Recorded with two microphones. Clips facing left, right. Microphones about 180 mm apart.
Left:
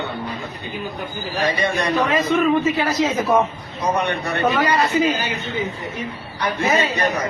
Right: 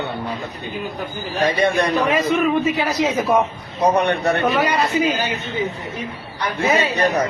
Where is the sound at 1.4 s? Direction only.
55° right (ahead or behind).